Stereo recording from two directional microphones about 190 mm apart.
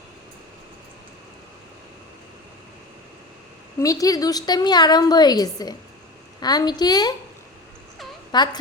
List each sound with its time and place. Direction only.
3.8 s a woman's voice: 20° left (ahead or behind)
8.3 s a woman's voice: 20° left (ahead or behind)